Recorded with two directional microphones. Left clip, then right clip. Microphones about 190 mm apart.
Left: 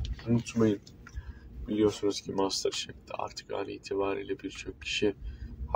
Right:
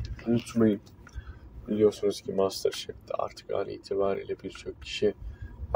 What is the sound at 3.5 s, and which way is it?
Speech, 25° left (ahead or behind).